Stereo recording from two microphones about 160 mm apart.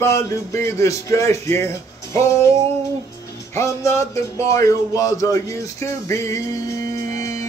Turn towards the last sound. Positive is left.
turn(degrees=20)  # may be behind; listen again after turning